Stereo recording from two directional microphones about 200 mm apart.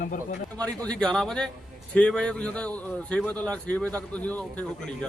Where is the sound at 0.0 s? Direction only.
40° left (ahead or behind).